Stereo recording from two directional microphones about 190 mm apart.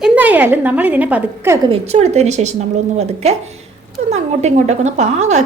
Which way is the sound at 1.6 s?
30° right (ahead or behind).